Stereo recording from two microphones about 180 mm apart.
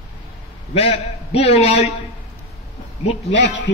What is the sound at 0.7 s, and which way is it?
A man's voice, 35° left (ahead or behind).